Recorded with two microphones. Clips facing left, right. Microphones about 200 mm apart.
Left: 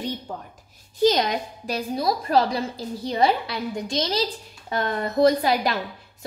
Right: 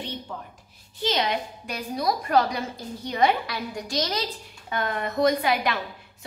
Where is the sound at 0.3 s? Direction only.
35° left (ahead or behind).